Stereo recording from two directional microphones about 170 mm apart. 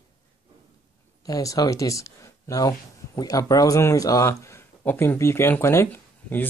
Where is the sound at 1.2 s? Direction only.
20° left (ahead or behind).